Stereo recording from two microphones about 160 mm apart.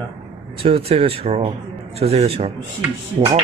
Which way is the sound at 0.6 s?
35° right (ahead or behind).